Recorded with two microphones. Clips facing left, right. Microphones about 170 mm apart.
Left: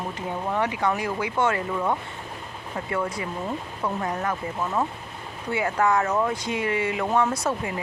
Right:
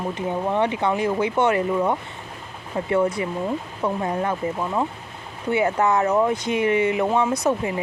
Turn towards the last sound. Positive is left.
turn(degrees=-20)  # may be behind; listen again after turning